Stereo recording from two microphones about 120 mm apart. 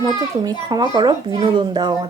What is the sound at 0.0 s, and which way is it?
A woman's voice, 30° right (ahead or behind).